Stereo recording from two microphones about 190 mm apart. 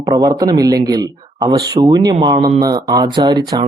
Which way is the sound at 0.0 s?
20° right (ahead or behind).